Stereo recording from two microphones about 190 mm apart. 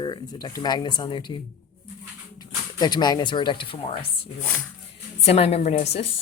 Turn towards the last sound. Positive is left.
turn(degrees=35)  # may be behind; listen again after turning